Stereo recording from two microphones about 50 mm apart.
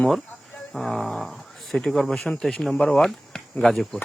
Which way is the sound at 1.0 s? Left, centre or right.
Centre.